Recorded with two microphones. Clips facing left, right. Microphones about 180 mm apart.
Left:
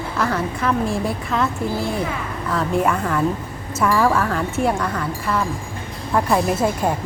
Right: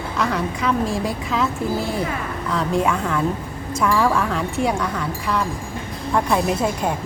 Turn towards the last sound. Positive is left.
turn(degrees=0)  # may be behind; listen again after turning